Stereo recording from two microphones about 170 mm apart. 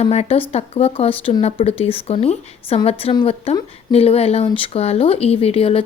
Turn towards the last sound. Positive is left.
turn(degrees=35)  # may be behind; listen again after turning